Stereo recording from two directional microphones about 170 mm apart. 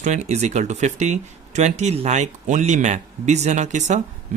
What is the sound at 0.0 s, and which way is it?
Speech, 45° right (ahead or behind).